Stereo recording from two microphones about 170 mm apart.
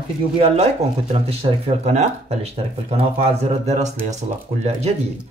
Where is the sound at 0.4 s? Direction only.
35° right (ahead or behind).